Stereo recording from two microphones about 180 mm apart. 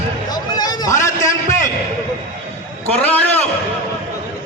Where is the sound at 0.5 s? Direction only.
20° left (ahead or behind).